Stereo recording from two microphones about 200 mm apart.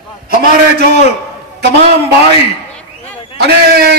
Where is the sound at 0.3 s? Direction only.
50° right (ahead or behind).